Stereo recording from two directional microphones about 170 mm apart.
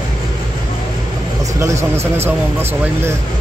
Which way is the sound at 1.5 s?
15° right (ahead or behind).